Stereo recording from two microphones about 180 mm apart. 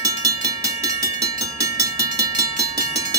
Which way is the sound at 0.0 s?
20° right (ahead or behind).